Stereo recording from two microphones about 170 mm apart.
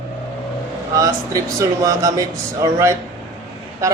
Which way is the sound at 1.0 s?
20° right (ahead or behind).